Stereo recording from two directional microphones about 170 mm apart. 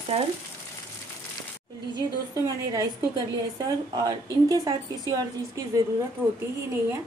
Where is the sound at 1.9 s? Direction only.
20° right (ahead or behind).